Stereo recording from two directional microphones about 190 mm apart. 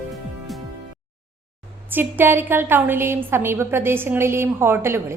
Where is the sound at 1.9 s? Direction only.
10° right (ahead or behind).